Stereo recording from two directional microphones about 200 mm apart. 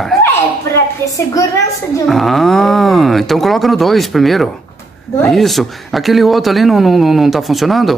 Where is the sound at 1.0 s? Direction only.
15° left (ahead or behind).